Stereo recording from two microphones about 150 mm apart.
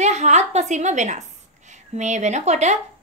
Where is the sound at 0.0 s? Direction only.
50° right (ahead or behind).